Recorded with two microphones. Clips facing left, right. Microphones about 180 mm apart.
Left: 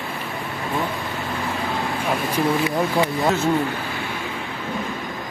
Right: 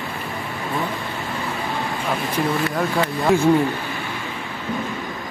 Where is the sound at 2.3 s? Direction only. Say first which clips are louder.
Left 1 dB; 15° left (ahead or behind).